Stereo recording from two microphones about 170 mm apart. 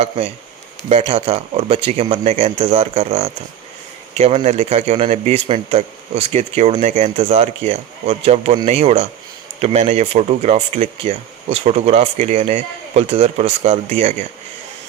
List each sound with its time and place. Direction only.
0.9 s speech: 35° right (ahead or behind)